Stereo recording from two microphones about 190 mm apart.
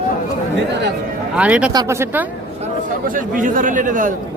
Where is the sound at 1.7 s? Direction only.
15° right (ahead or behind).